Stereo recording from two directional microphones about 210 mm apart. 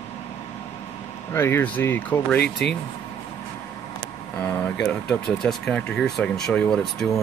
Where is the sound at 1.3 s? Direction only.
10° left (ahead or behind).